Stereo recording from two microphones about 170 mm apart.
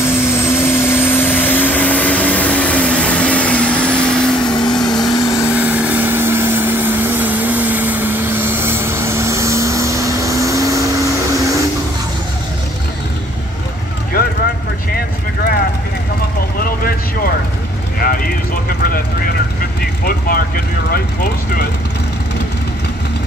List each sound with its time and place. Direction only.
0.0 s vehicle: 15° left (ahead or behind)
4.6 s vehicle: 25° left (ahead or behind)
5.5 s vehicle: 10° right (ahead or behind)
15.0 s vehicle: 65° left (ahead or behind)
20.1 s vehicle: 60° left (ahead or behind)